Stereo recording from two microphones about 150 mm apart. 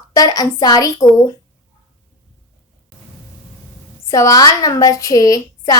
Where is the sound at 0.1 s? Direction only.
25° left (ahead or behind).